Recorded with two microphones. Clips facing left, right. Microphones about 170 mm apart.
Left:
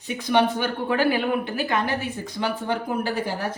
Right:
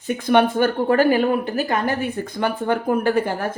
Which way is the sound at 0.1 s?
55° right (ahead or behind).